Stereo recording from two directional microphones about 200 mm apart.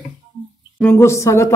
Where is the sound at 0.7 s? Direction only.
10° left (ahead or behind).